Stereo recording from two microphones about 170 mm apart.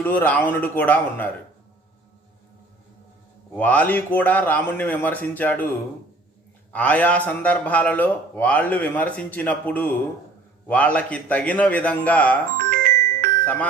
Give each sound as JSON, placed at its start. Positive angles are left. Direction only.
{"t": 0.0, "sound": "a man's voice", "side_deg": 10}
{"t": 3.5, "sound": "a man's voice", "side_deg": 10}
{"t": 6.7, "sound": "a man's voice", "side_deg": 10}
{"t": 12.7, "sound": "music", "side_deg": -65}
{"t": 13.4, "sound": "speech", "side_deg": 10}